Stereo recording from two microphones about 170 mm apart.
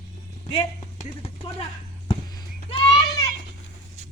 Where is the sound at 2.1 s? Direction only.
25° left (ahead or behind).